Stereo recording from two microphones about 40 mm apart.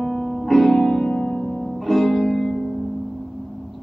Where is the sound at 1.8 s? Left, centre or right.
Centre.